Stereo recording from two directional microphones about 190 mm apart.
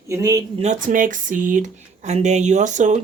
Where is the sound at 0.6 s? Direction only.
40° right (ahead or behind).